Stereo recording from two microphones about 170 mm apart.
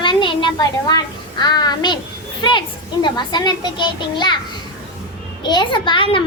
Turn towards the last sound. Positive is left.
turn(degrees=30)  # may be behind; listen again after turning